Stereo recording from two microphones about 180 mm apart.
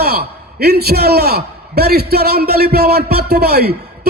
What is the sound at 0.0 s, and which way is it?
A man's voice, 60° right (ahead or behind).